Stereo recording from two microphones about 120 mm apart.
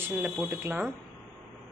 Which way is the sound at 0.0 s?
15° right (ahead or behind).